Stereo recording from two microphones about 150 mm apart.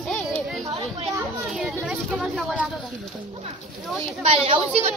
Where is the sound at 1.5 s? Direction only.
Centre (ahead or behind).